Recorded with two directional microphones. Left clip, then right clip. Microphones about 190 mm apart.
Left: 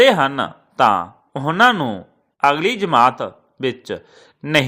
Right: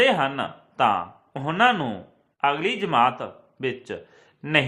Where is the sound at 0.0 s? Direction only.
35° left (ahead or behind).